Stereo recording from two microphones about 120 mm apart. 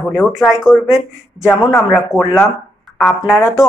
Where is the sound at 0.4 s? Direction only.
5° right (ahead or behind).